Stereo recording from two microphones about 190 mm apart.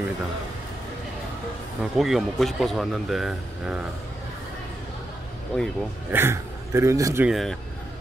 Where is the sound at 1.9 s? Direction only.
Centre (ahead or behind).